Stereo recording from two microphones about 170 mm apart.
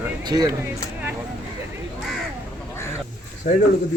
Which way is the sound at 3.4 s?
55° left (ahead or behind).